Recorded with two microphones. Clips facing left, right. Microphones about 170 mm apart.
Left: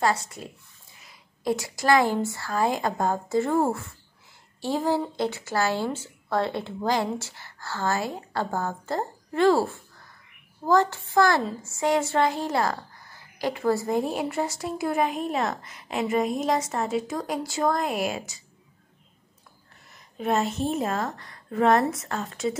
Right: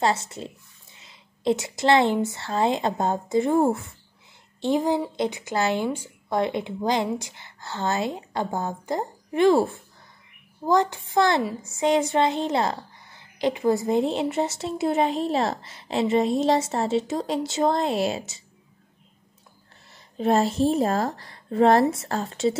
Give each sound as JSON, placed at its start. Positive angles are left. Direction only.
{"t": 0.0, "sound": "a woman's voice", "side_deg": -25}
{"t": 19.9, "sound": "a woman's voice", "side_deg": -30}